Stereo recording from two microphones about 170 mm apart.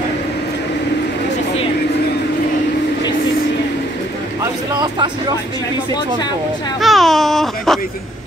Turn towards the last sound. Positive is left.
turn(degrees=0)  # may be behind; listen again after turning